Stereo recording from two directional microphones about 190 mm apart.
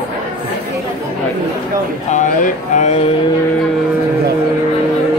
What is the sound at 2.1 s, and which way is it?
Music, 40° left (ahead or behind).